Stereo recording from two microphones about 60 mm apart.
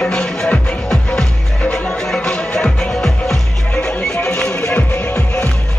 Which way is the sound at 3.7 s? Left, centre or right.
Centre.